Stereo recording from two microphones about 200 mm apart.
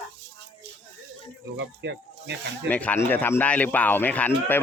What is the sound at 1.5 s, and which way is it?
Speech, 60° right (ahead or behind).